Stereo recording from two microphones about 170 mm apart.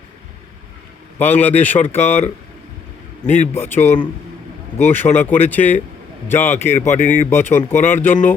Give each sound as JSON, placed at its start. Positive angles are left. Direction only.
{"t": 1.2, "sound": "speech", "side_deg": 10}
{"t": 3.2, "sound": "speech", "side_deg": 45}
{"t": 3.5, "sound": "speech", "side_deg": 15}
{"t": 5.1, "sound": "speech", "side_deg": 10}